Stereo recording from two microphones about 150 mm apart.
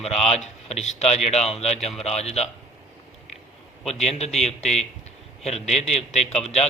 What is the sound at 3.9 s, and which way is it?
A man's voice, 45° left (ahead or behind).